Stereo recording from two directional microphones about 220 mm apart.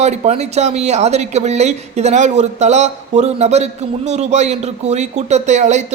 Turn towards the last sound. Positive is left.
turn(degrees=-30)  # may be behind; listen again after turning